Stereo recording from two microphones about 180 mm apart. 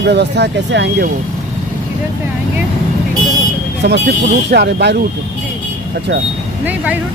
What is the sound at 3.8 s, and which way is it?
Speech, 65° right (ahead or behind).